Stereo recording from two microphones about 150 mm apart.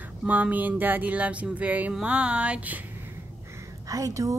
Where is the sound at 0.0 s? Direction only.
10° right (ahead or behind).